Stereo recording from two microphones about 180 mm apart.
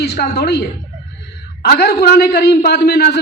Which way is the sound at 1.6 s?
65° left (ahead or behind).